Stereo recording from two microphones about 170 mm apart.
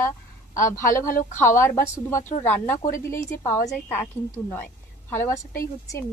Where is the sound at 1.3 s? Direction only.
15° left (ahead or behind).